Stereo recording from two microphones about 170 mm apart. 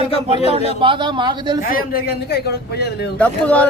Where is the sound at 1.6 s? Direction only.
60° left (ahead or behind).